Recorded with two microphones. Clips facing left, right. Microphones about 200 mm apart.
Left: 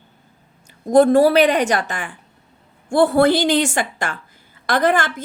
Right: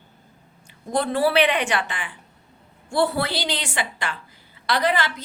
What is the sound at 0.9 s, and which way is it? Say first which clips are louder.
A woman's voice: left 10 dB; 45° left (ahead or behind).